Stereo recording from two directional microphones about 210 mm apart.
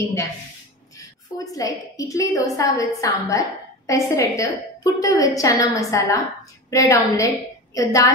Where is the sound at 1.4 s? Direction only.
15° left (ahead or behind).